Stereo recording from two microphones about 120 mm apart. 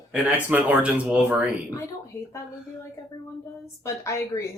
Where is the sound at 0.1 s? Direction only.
10° right (ahead or behind).